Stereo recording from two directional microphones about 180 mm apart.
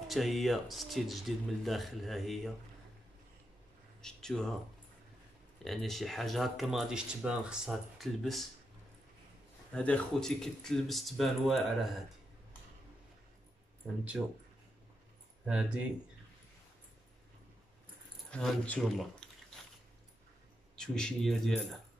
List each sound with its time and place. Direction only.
0.1 s speech: centre (ahead or behind)
4.0 s a sound: 5° left (ahead or behind)
5.6 s speech: centre (ahead or behind)
9.7 s speech: 5° left (ahead or behind)
15.4 s speech: 5° right (ahead or behind)
18.3 s speech: 5° left (ahead or behind)
20.7 s speech: 5° left (ahead or behind)